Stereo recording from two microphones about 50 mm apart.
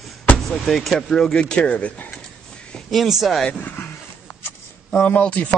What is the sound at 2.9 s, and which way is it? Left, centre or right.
Speech, centre.